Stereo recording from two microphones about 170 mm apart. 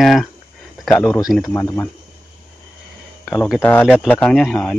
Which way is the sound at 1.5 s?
15° left (ahead or behind).